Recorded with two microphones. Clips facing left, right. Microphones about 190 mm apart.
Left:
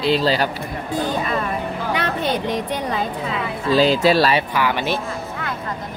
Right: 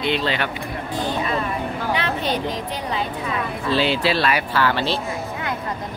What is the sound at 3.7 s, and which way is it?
Speech, 40° left (ahead or behind).